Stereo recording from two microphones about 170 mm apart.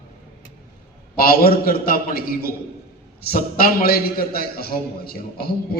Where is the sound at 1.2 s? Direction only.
60° left (ahead or behind).